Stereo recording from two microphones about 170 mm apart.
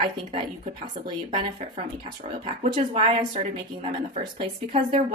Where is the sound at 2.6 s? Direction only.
35° right (ahead or behind).